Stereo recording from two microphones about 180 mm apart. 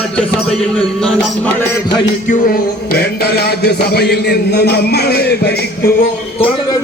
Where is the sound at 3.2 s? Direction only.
65° left (ahead or behind).